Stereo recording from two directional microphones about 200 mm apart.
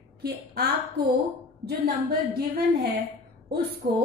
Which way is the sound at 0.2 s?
50° right (ahead or behind).